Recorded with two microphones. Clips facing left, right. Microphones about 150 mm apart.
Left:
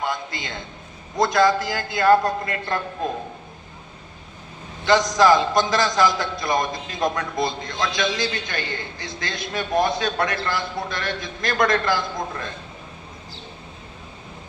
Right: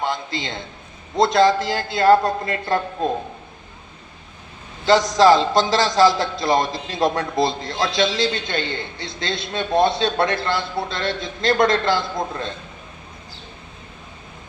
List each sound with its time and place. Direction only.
0.0 s a sound: 25° right (ahead or behind)
1.1 s a man's voice: 25° right (ahead or behind)
4.9 s a man's voice: 30° right (ahead or behind)